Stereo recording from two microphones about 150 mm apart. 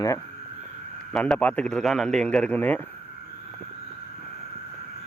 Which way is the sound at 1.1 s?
5° left (ahead or behind).